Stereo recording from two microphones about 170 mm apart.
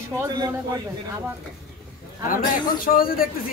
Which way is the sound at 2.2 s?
55° left (ahead or behind).